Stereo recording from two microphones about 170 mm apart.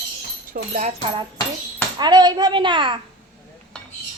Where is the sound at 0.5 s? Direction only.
65° right (ahead or behind).